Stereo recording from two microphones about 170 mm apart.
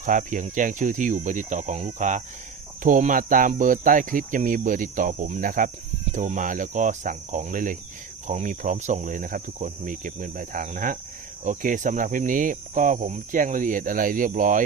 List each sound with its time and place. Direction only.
0.0 s speech: 50° right (ahead or behind)